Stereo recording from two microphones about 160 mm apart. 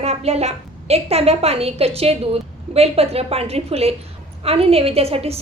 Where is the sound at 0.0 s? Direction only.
40° right (ahead or behind).